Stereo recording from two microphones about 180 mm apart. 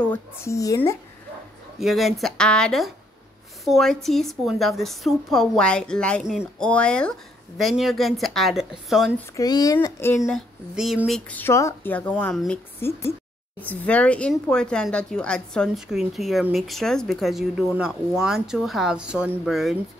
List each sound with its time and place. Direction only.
0.0 s speech: 10° left (ahead or behind)
1.8 s a woman's voice: centre (ahead or behind)
9.4 s speech: 20° left (ahead or behind)
10.2 s a woman's voice: centre (ahead or behind)